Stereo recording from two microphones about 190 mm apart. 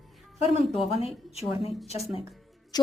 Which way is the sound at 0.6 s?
Centre (ahead or behind).